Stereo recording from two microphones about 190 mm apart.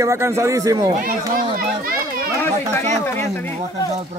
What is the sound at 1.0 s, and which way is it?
Speech, 50° right (ahead or behind).